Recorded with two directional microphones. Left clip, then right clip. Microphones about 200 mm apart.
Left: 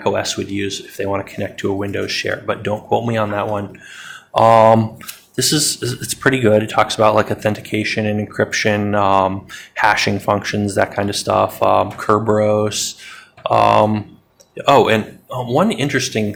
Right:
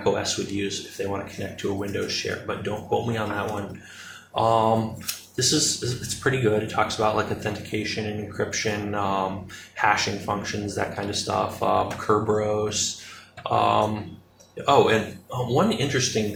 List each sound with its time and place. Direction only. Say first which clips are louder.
0.0 s speech: left 6 dB; 50° left (ahead or behind)